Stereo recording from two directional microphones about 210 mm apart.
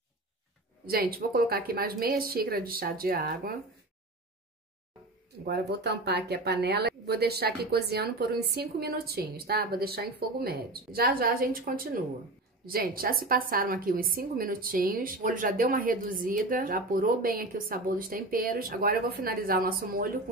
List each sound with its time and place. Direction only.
0.8 s a woman's voice: 45° right (ahead or behind)
5.4 s a woman's voice: 50° right (ahead or behind)